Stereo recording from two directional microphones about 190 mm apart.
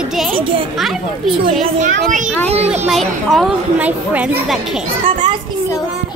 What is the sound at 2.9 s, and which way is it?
Speech, centre (ahead or behind).